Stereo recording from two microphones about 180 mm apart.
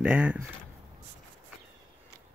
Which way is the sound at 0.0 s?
5° right (ahead or behind).